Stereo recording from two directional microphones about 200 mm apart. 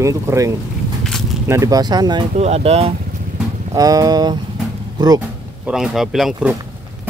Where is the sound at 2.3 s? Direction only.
30° right (ahead or behind).